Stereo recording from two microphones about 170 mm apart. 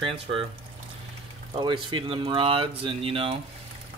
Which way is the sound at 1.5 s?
30° right (ahead or behind).